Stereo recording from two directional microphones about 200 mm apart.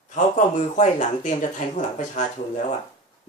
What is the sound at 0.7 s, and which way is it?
Speech, 35° left (ahead or behind).